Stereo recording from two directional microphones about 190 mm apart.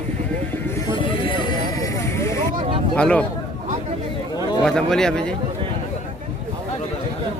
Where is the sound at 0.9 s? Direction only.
25° left (ahead or behind).